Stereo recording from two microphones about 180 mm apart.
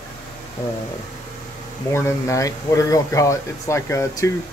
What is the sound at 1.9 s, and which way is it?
Speech, 15° left (ahead or behind).